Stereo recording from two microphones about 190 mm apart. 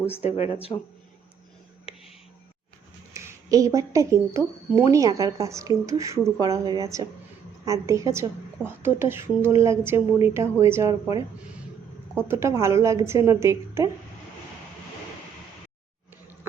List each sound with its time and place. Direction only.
0.2 s speech: 35° left (ahead or behind)
3.2 s a woman's voice: 15° right (ahead or behind)
12.3 s speech: 15° right (ahead or behind)